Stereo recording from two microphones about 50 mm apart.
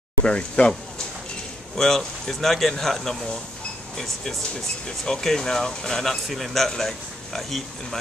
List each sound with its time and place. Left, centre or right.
0.2 s speech: centre
1.8 s speech: centre